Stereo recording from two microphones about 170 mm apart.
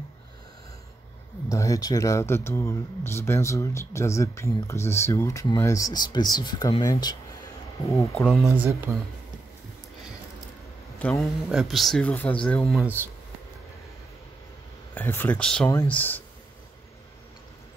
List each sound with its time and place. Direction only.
1.5 s speech: 20° left (ahead or behind)
8.0 s speech: 5° left (ahead or behind)
8.5 s speech: 15° right (ahead or behind)
11.0 s speech: 5° left (ahead or behind)
12.8 s speech: 15° right (ahead or behind)
15.0 s speech: 10° left (ahead or behind)